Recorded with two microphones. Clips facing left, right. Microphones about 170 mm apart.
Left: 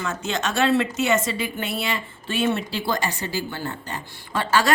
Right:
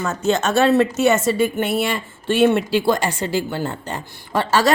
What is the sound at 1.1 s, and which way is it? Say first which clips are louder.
A woman's voice: right 7 dB; 60° right (ahead or behind).